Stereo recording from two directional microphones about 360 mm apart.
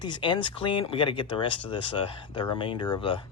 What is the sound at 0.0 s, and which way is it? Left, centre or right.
Speech, centre.